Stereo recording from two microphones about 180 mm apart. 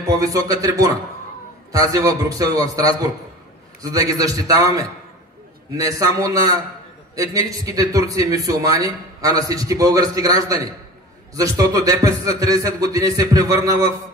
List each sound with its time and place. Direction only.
0.0 s speech: 20° right (ahead or behind)